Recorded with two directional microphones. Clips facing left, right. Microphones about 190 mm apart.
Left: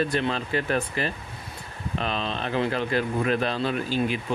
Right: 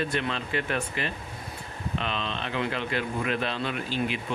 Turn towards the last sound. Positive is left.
turn(degrees=40)  # may be behind; listen again after turning